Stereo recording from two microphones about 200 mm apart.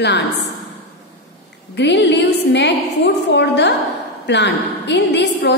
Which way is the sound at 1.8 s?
60° left (ahead or behind).